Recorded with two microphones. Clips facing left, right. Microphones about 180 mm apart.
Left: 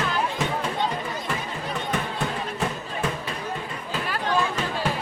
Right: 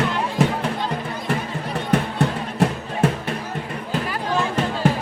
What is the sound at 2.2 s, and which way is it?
Music, 70° right (ahead or behind).